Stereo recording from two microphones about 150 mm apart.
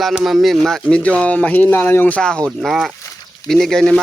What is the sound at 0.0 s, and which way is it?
Speech, 5° right (ahead or behind).